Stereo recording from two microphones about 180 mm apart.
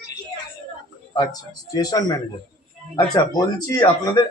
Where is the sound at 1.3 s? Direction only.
20° left (ahead or behind).